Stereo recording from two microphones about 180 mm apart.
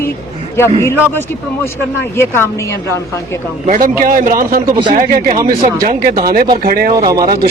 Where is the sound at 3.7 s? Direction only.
50° right (ahead or behind).